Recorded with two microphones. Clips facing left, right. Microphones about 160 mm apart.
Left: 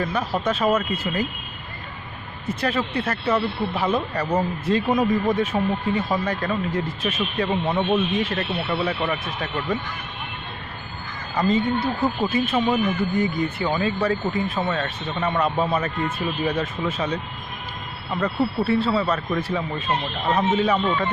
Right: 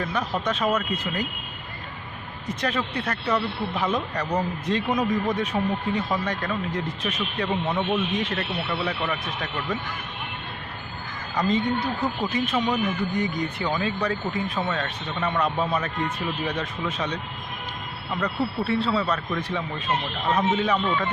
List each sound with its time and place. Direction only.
0.0 s speech: 5° left (ahead or behind)
2.5 s speech: 5° left (ahead or behind)
7.8 s speech: 25° left (ahead or behind)
8.2 s speech: 5° left (ahead or behind)
11.3 s speech: centre (ahead or behind)
11.8 s speech: 25° left (ahead or behind)
12.2 s speech: 5° left (ahead or behind)